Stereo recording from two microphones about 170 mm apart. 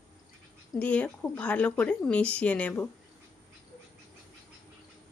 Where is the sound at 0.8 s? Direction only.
10° left (ahead or behind).